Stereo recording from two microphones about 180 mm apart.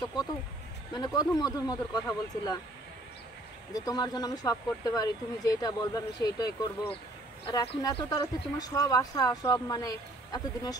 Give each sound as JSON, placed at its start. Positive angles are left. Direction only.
{"t": 0.0, "sound": "speech", "side_deg": 20}
{"t": 3.7, "sound": "speech", "side_deg": 20}